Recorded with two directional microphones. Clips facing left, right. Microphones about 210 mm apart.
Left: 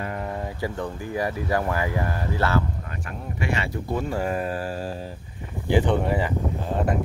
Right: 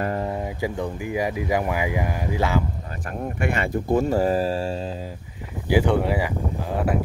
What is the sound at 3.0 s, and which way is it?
Speech, 50° right (ahead or behind).